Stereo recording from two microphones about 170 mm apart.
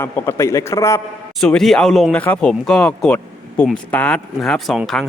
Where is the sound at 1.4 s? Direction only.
Centre (ahead or behind).